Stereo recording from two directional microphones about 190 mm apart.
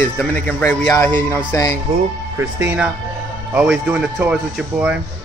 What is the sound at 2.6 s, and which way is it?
Speech, 10° right (ahead or behind).